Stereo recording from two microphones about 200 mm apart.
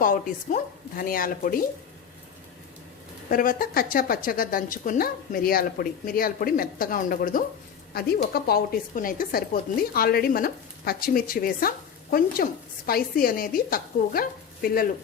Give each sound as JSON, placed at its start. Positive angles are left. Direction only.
{"t": 0.0, "sound": "a woman's voice", "side_deg": 40}
{"t": 3.2, "sound": "a woman's voice", "side_deg": 45}